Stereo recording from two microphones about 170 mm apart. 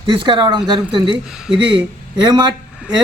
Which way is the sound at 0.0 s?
30° right (ahead or behind).